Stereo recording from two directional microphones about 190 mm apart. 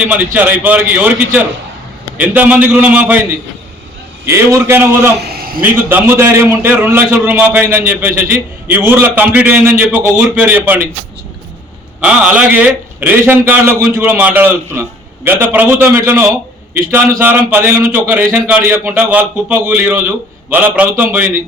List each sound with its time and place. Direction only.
0.3 s a man's voice: 10° right (ahead or behind)
4.3 s a man's voice: 15° right (ahead or behind)
5.2 s a sound: 50° right (ahead or behind)
5.9 s a man's voice: 10° right (ahead or behind)
11.9 s a man's voice: 5° right (ahead or behind)